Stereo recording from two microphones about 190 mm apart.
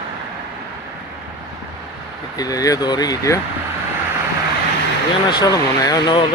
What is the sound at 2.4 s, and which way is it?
Speech, 20° left (ahead or behind).